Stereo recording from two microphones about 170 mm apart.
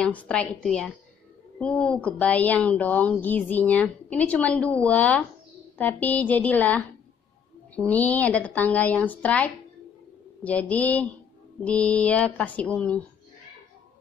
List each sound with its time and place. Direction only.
0.0 s a woman's voice: 5° left (ahead or behind)